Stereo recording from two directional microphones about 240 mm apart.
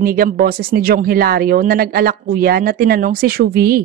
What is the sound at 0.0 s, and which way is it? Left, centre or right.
Speech, right.